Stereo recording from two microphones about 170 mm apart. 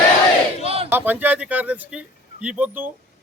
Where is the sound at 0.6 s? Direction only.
35° right (ahead or behind).